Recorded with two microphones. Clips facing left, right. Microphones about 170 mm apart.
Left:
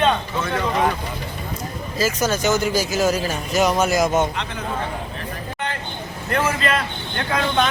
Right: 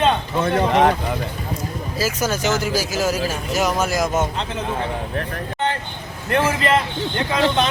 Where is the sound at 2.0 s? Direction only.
10° right (ahead or behind).